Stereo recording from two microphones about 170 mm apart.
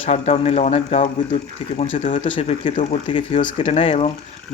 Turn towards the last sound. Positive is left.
turn(degrees=35)  # may be behind; listen again after turning